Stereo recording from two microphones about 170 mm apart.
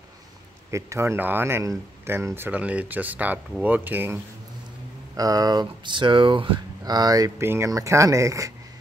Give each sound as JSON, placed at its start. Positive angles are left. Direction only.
{"t": 0.7, "sound": "speech", "side_deg": -15}
{"t": 5.1, "sound": "speech", "side_deg": -20}